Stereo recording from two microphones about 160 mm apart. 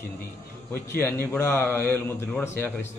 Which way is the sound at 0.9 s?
15° left (ahead or behind).